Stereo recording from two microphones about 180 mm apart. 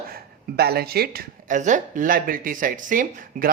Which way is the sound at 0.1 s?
60° right (ahead or behind).